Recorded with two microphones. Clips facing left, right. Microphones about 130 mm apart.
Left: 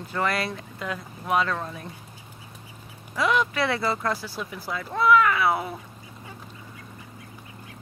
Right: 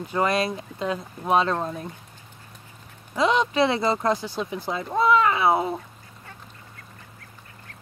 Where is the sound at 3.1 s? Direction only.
20° right (ahead or behind).